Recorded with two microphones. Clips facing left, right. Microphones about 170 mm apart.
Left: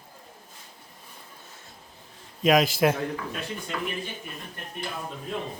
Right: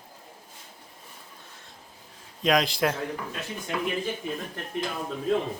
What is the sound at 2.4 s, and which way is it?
Speech, 5° left (ahead or behind).